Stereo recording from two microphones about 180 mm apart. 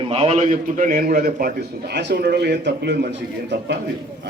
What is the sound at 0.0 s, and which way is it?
A man's voice, 35° right (ahead or behind).